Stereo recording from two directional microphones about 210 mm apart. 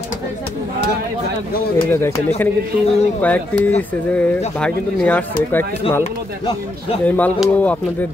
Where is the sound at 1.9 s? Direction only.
10° left (ahead or behind).